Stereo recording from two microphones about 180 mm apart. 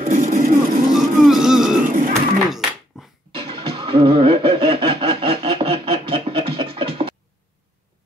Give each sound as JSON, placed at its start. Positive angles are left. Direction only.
{"t": 0.0, "sound": "music", "side_deg": -50}
{"t": 1.2, "sound": "music", "side_deg": 0}
{"t": 1.9, "sound": "bird", "side_deg": -45}
{"t": 2.9, "sound": "a sound", "side_deg": -5}
{"t": 3.3, "sound": "music", "side_deg": -25}